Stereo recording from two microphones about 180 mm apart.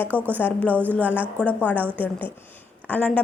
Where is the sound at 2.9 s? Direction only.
5° left (ahead or behind).